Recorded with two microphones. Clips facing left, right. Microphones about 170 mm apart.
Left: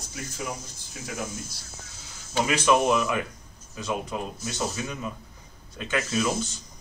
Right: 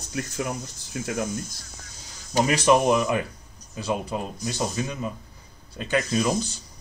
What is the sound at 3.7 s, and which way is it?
Speech, 35° right (ahead or behind).